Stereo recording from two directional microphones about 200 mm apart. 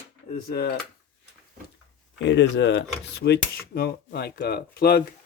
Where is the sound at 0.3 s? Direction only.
50° left (ahead or behind).